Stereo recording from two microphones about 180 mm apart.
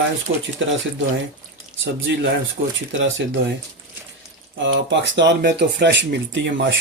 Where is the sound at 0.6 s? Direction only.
90° right.